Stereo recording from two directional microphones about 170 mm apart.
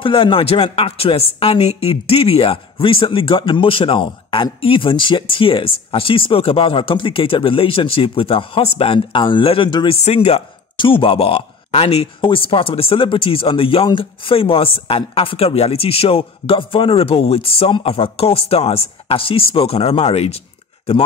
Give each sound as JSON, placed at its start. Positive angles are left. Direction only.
{"t": 0.0, "sound": "speech", "side_deg": 30}
{"t": 10.0, "sound": "speech", "side_deg": 40}